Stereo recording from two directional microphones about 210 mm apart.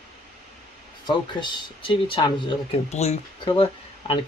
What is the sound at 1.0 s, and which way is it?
Speech, 20° left (ahead or behind).